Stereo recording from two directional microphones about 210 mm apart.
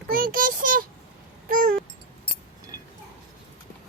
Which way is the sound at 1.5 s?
45° right (ahead or behind).